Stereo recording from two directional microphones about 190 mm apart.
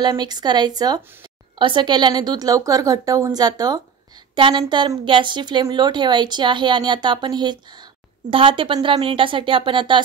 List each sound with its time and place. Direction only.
0.0 s a woman's voice: 20° right (ahead or behind)